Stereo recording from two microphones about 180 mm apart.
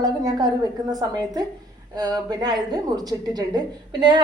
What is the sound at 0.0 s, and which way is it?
A woman's voice, 20° right (ahead or behind).